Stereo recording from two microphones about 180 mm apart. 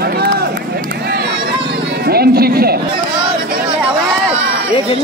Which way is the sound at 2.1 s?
60° right (ahead or behind).